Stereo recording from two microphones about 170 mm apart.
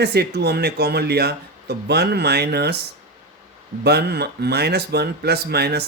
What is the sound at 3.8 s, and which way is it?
Speech, 70° right (ahead or behind).